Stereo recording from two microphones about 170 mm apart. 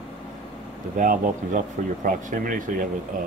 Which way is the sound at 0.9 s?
50° right (ahead or behind).